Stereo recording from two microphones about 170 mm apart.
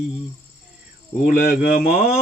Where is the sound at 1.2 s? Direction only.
55° left (ahead or behind).